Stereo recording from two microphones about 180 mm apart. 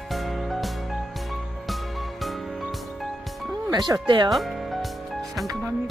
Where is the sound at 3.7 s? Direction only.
25° right (ahead or behind).